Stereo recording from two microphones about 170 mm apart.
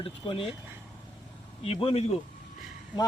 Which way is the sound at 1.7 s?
35° left (ahead or behind).